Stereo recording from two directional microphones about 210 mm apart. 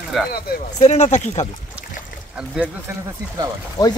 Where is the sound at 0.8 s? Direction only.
35° left (ahead or behind).